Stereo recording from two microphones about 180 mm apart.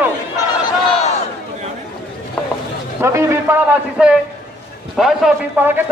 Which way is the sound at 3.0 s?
15° right (ahead or behind).